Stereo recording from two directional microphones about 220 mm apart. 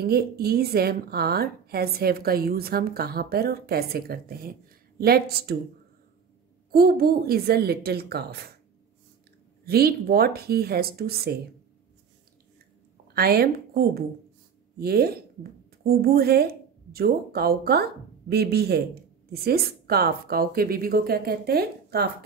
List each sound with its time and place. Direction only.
0.0 s a woman's voice: 45° right (ahead or behind)
6.7 s a woman's voice: 45° right (ahead or behind)
9.7 s a woman's voice: 45° right (ahead or behind)
13.1 s a woman's voice: 45° right (ahead or behind)